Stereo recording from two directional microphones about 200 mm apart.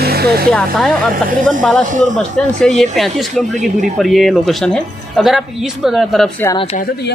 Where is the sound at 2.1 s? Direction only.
5° left (ahead or behind).